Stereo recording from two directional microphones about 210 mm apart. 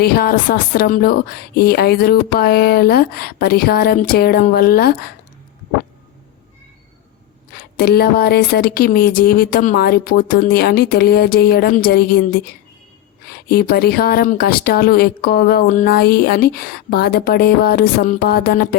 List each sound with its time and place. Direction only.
0.0 s speech: 50° left (ahead or behind)
7.5 s speech: 50° left (ahead or behind)